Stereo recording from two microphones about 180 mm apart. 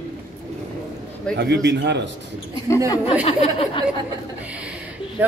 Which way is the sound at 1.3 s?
70° right (ahead or behind).